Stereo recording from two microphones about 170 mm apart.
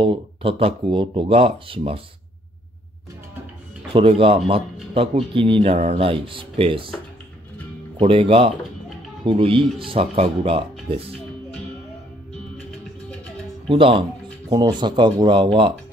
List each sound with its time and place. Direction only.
0.0 s speech: 30° right (ahead or behind)
3.9 s speech: 35° right (ahead or behind)
8.0 s speech: 35° right (ahead or behind)
13.7 s speech: 30° right (ahead or behind)